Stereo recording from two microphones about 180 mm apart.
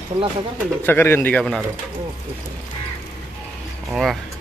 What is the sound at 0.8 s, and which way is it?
Speech, 10° left (ahead or behind).